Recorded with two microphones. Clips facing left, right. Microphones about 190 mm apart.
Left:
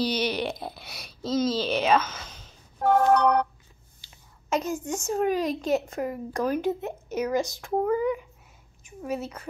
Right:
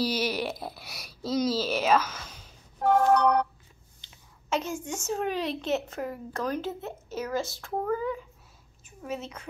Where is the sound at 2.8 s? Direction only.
60° left (ahead or behind).